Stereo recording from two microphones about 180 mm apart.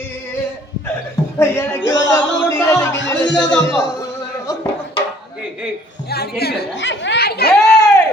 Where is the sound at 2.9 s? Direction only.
80° left.